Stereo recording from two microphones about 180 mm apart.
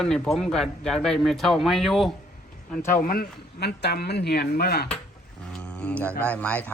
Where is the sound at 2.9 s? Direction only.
50° left (ahead or behind).